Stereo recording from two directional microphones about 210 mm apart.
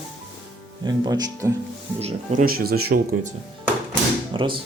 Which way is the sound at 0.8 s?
20° right (ahead or behind).